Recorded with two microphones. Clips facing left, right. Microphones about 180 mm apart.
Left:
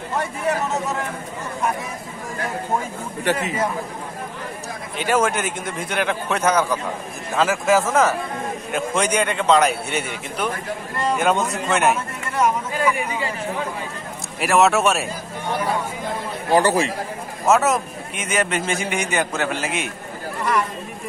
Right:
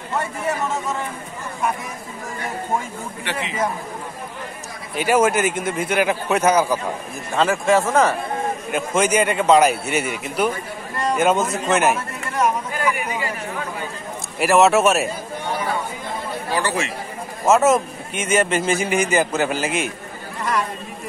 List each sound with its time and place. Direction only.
3.3 s a man's voice: 45° left (ahead or behind)
4.9 s a man's voice: 10° right (ahead or behind)
7.3 s a man's voice: centre (ahead or behind)
14.4 s a man's voice: centre (ahead or behind)
16.5 s speech: 35° left (ahead or behind)
17.5 s a man's voice: centre (ahead or behind)